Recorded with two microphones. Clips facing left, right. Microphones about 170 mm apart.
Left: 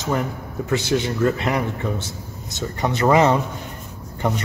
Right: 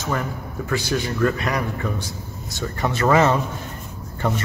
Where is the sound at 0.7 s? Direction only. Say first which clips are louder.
Left 3 dB; 20° left (ahead or behind).